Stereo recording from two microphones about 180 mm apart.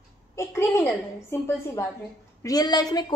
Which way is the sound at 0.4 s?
15° left (ahead or behind).